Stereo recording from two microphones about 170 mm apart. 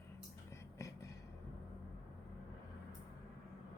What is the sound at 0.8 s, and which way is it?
Beatboxing, 20° left (ahead or behind).